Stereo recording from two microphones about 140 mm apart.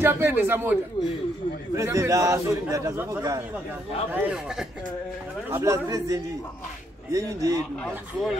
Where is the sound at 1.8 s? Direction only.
20° right (ahead or behind); by 4.8 s 5° right (ahead or behind).